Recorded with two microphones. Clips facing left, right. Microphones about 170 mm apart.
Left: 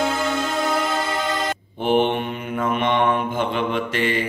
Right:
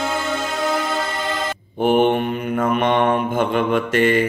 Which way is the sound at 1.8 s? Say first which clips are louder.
Right 4 dB; 50° right (ahead or behind).